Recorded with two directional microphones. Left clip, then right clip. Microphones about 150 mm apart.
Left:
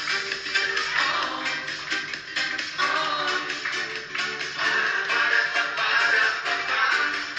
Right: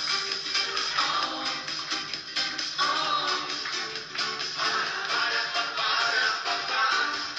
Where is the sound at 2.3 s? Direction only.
50° right (ahead or behind).